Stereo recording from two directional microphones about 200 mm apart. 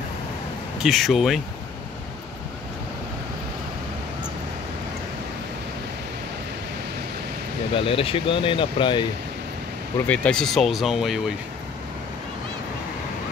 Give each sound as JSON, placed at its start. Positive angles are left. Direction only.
{"t": 0.8, "sound": "speech", "side_deg": 0}
{"t": 7.7, "sound": "speech", "side_deg": 25}
{"t": 10.0, "sound": "speech", "side_deg": 5}